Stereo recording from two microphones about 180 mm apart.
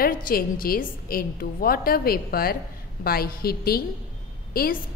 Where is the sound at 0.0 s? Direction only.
55° left (ahead or behind).